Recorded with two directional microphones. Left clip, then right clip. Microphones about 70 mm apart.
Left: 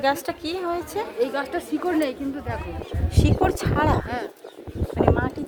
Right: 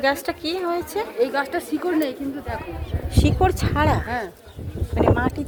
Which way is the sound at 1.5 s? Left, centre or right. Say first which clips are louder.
Right 2 dB; centre.